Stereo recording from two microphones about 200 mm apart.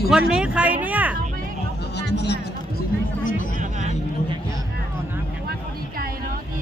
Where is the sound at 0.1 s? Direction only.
5° right (ahead or behind).